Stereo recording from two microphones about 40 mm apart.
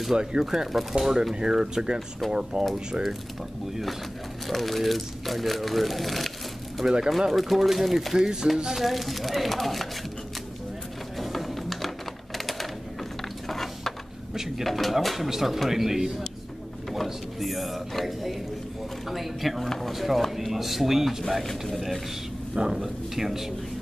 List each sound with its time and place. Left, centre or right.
0.1 s speech: centre
2.0 s speech: centre
2.5 s speech: right
4.5 s speech: centre
6.8 s speech: centre
7.1 s speech: centre
8.2 s speech: centre
8.7 s speech: centre
11.1 s music: centre
13.5 s a sound: centre
14.6 s speech: centre
22.5 s speech: centre
22.8 s speech: centre